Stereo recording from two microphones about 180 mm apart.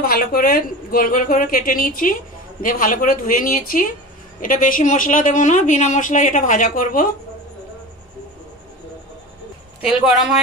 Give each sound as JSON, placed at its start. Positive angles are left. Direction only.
{"t": 0.0, "sound": "speech", "side_deg": 55}
{"t": 9.8, "sound": "speech", "side_deg": -5}